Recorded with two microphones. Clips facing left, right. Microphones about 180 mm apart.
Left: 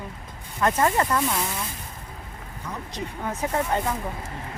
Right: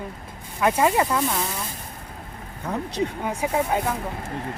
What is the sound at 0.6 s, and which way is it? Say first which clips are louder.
Speech: right 2 dB; 10° right (ahead or behind).